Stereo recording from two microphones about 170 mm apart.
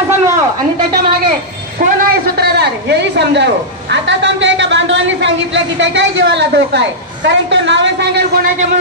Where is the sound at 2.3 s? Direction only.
75° right (ahead or behind).